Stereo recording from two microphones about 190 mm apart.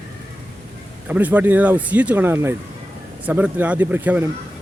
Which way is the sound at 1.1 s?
10° right (ahead or behind).